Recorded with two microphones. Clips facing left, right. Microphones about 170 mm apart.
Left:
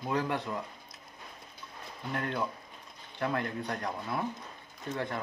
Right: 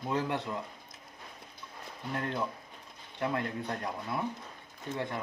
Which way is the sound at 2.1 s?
25° right (ahead or behind).